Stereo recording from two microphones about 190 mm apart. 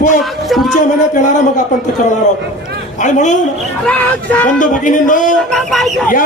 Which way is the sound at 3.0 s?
40° left (ahead or behind).